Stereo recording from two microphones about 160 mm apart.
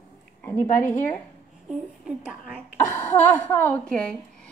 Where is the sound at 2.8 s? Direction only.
15° left (ahead or behind).